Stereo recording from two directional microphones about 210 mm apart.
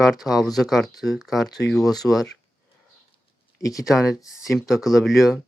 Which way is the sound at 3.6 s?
15° left (ahead or behind).